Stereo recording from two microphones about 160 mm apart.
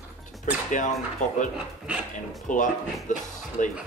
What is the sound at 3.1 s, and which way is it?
Speech, 50° left (ahead or behind).